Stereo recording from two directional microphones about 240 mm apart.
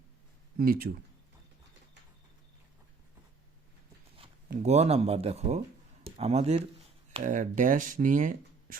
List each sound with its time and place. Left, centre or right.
0.6 s speech: right
4.6 s speech: right